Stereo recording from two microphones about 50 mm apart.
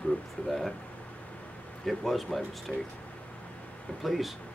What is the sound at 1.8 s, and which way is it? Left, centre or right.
Speech, centre.